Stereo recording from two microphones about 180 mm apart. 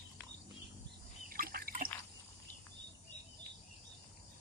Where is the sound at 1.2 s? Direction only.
55° right (ahead or behind).